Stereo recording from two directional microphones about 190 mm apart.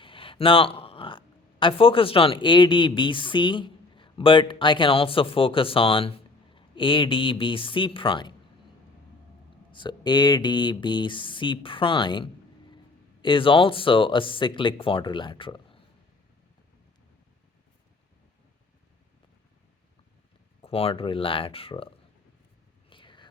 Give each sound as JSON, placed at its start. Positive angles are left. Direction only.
{"t": 0.0, "sound": "speech", "side_deg": 30}
{"t": 9.7, "sound": "speech", "side_deg": 25}
{"t": 20.6, "sound": "speech", "side_deg": 30}
{"t": 22.9, "sound": "whispering", "side_deg": 25}